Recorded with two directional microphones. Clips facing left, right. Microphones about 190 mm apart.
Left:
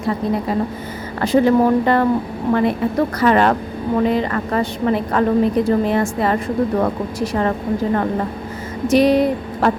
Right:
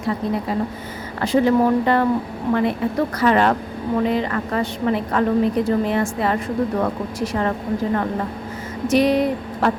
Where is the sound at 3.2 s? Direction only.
50° left (ahead or behind).